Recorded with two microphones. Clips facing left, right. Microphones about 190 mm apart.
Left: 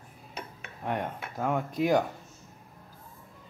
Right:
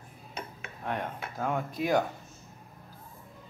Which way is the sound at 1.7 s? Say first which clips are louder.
Left 3 dB; 15° left (ahead or behind).